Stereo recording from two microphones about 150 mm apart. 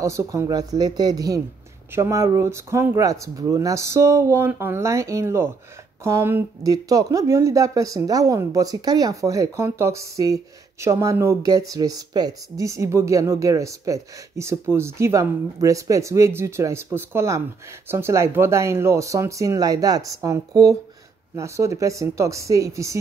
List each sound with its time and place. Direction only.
0.0 s speech: 20° right (ahead or behind)